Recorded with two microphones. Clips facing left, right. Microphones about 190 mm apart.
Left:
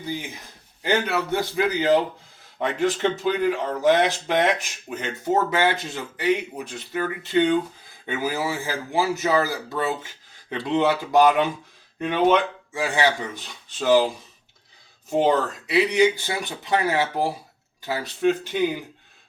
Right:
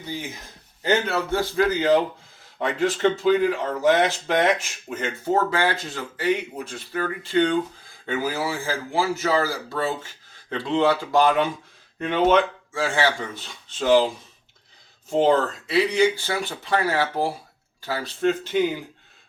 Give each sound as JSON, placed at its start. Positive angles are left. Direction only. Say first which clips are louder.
{"t": 0.8, "sound": "speech", "louder": "right 1 dB", "side_deg": 15}
{"t": 15.1, "sound": "speech", "louder": "right 1 dB", "side_deg": 15}